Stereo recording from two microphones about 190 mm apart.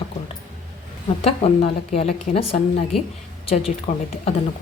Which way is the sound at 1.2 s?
30° left (ahead or behind).